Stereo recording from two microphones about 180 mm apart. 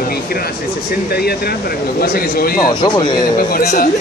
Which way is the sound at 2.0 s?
55° left (ahead or behind).